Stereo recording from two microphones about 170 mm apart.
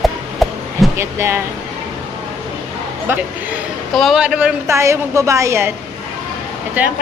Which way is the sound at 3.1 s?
10° right (ahead or behind).